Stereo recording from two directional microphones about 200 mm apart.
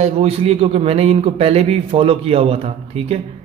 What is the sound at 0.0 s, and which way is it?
A man's voice, 30° right (ahead or behind).